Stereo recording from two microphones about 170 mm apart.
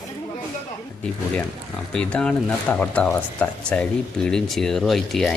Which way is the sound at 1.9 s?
5° left (ahead or behind).